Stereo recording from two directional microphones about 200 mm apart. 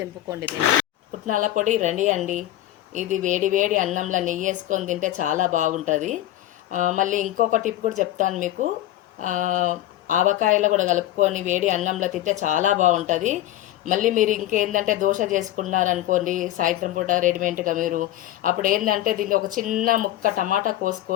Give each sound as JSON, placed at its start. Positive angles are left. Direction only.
{"t": 1.3, "sound": "a woman's voice", "side_deg": -40}